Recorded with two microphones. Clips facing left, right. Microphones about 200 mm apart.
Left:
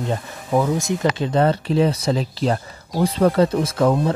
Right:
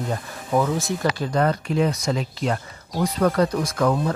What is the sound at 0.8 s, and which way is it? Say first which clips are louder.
Speech: left 3 dB; 20° left (ahead or behind).